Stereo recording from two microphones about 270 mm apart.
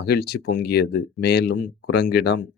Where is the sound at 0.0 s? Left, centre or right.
Left.